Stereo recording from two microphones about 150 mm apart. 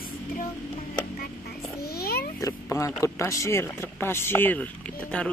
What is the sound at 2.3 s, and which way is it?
Speech, 20° left (ahead or behind).